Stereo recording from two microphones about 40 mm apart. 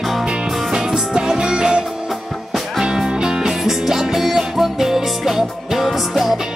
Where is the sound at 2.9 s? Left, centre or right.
Centre.